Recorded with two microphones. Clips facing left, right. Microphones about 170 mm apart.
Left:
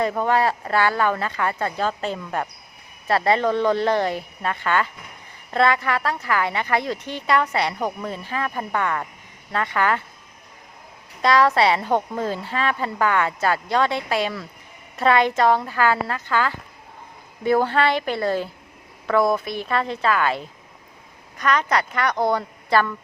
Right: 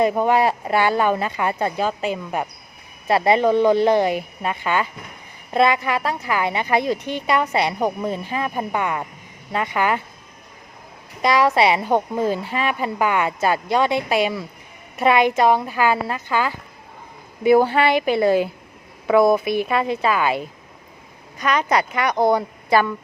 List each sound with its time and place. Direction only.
0.0 s a woman's voice: 15° right (ahead or behind)
11.2 s a woman's voice: 15° right (ahead or behind)